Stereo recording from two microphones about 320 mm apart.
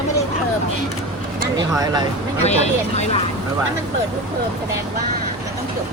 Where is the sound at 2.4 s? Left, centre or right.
Left.